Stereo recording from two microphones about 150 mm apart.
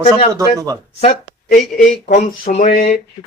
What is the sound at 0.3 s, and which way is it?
Speech, 25° right (ahead or behind).